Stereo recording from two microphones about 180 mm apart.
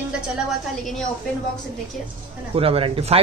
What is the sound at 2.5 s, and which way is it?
Speech, 30° right (ahead or behind).